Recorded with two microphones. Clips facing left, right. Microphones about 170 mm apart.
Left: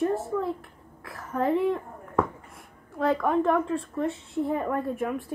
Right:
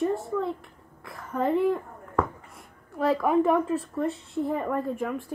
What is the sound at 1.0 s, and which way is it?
A woman's voice, centre (ahead or behind).